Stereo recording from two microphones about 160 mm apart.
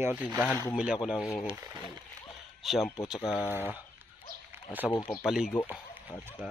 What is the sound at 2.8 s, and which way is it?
Speech, 15° left (ahead or behind).